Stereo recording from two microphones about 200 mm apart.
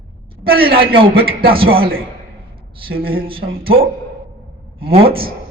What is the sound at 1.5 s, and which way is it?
Speech, 25° right (ahead or behind).